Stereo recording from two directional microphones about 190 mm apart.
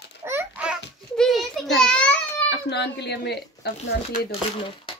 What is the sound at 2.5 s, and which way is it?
Speech, 60° left (ahead or behind).